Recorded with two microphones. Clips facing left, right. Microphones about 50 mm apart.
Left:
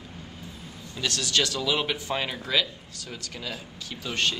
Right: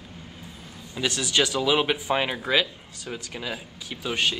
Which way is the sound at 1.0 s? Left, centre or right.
Centre.